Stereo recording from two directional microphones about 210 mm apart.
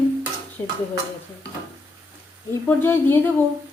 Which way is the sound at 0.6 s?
10° left (ahead or behind).